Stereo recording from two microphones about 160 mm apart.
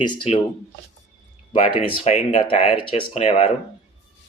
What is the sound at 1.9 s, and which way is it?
Speech, 40° left (ahead or behind).